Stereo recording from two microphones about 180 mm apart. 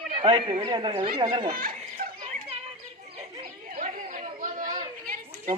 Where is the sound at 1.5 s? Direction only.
55° right (ahead or behind).